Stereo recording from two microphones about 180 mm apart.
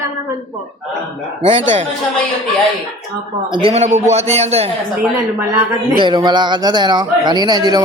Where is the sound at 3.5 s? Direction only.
30° right (ahead or behind).